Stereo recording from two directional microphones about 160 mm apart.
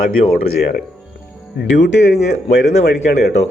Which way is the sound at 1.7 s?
90° left.